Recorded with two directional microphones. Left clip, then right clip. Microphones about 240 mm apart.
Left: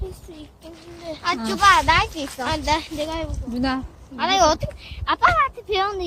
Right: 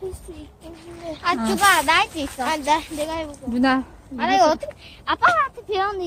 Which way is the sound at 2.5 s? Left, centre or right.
Right.